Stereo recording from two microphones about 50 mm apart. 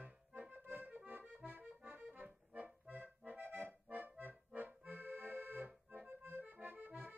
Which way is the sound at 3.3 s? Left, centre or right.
Right.